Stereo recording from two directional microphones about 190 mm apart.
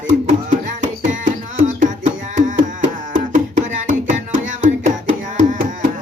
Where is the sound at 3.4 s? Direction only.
40° right (ahead or behind).